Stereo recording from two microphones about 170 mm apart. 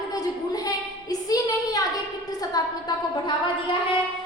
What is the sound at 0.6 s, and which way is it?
Child singing, 20° left (ahead or behind).